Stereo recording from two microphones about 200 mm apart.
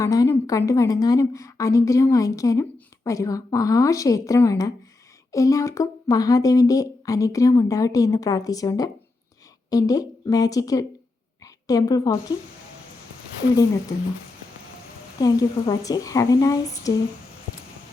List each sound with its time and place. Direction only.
0.0 s a woman's voice: 15° left (ahead or behind)
15.2 s a woman's voice: 20° left (ahead or behind)